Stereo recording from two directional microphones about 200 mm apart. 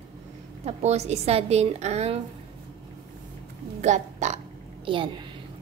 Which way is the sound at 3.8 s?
35° right (ahead or behind).